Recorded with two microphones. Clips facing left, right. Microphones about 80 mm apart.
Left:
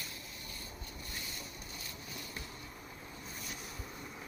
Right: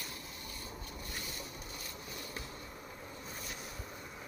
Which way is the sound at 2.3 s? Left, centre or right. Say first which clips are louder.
Right 1 dB; centre.